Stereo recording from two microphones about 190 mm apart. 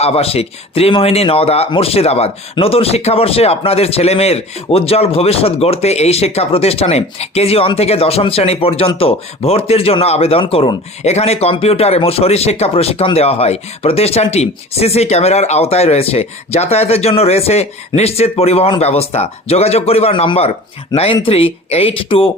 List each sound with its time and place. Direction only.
0.0 s speech: 30° left (ahead or behind)